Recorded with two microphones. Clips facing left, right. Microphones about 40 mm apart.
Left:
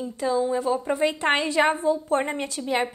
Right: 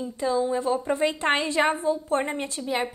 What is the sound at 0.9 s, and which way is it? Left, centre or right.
Speech, left.